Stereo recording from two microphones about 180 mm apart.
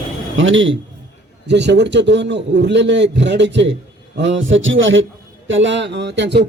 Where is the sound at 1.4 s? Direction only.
75° right (ahead or behind).